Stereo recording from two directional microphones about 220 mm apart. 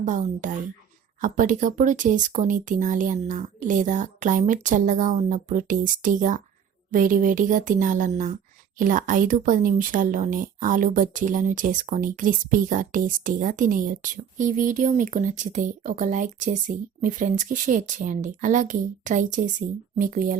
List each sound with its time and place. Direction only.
0.0 s speech: 35° right (ahead or behind)